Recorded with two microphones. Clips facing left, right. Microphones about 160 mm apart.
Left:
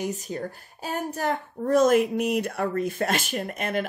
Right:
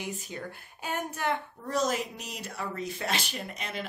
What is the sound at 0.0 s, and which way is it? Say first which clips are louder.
A woman's voice: left 7 dB; 40° left (ahead or behind).